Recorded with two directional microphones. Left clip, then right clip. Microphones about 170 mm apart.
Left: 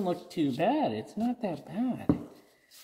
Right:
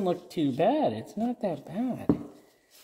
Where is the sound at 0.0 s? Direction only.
35° right (ahead or behind).